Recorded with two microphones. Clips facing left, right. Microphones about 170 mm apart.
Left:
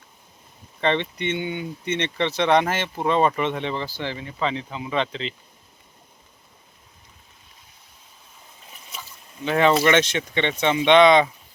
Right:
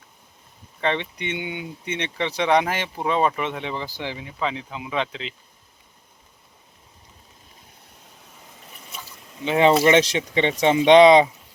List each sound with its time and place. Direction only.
0.8 s speech: 5° right (ahead or behind)
9.4 s speech: 25° right (ahead or behind)